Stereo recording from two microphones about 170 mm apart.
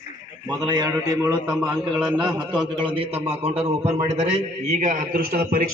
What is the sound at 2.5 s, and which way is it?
A man's voice, 25° right (ahead or behind).